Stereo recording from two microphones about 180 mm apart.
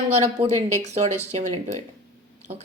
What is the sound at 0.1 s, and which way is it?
A woman's voice, 40° right (ahead or behind).